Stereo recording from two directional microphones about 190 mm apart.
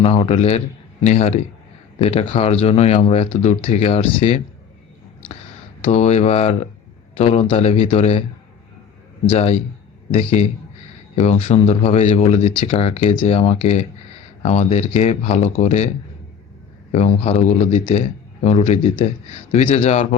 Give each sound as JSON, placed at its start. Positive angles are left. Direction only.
{"t": 0.0, "sound": "speech", "side_deg": 30}
{"t": 5.8, "sound": "speech", "side_deg": 35}
{"t": 9.2, "sound": "speech", "side_deg": 30}
{"t": 16.9, "sound": "speech", "side_deg": 35}